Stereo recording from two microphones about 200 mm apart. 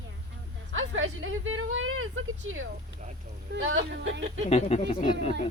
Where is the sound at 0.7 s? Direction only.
80° right.